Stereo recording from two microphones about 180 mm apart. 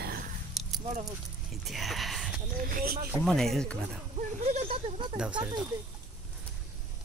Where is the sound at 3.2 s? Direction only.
5° left (ahead or behind).